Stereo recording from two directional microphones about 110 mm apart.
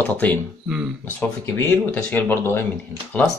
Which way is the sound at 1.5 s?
20° left (ahead or behind).